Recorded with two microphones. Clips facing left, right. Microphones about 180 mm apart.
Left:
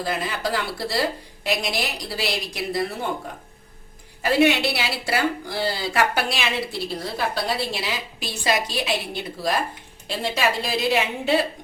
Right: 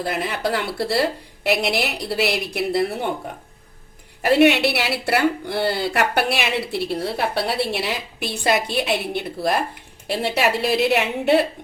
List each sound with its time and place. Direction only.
0.0 s a woman's voice: 60° right (ahead or behind)
4.2 s a woman's voice: 65° right (ahead or behind)